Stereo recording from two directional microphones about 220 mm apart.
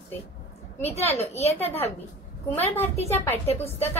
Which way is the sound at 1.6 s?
10° left (ahead or behind).